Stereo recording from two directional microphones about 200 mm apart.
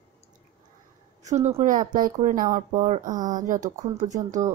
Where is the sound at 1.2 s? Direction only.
35° right (ahead or behind).